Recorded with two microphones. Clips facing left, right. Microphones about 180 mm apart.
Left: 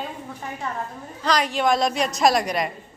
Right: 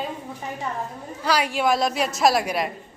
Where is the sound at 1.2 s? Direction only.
10° right (ahead or behind).